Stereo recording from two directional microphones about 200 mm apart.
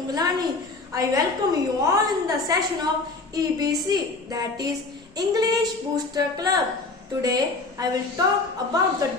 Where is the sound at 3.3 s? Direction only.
20° right (ahead or behind).